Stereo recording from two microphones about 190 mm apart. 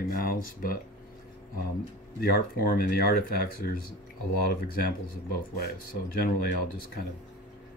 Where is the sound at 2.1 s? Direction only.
50° left (ahead or behind).